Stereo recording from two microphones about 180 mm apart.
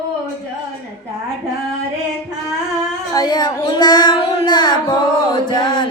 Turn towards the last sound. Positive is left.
turn(degrees=25)  # may be behind; listen again after turning